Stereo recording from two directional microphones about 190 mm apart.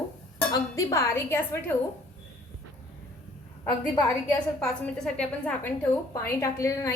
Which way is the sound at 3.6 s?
20° left (ahead or behind).